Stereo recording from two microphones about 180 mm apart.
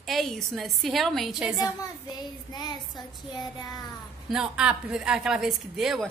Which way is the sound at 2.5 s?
25° left (ahead or behind).